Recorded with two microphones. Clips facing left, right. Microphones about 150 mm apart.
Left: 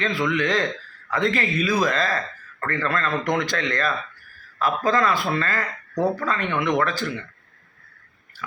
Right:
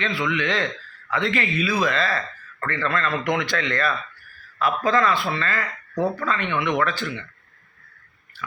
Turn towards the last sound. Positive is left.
turn(degrees=40)  # may be behind; listen again after turning